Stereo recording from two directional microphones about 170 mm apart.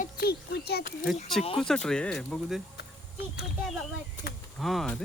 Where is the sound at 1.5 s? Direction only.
5° left (ahead or behind).